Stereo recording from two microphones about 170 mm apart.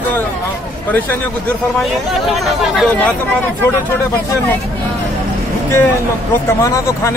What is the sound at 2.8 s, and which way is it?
Speech, 10° left (ahead or behind).